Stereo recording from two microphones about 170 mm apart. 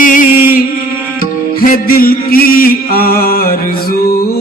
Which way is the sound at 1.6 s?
55° left (ahead or behind).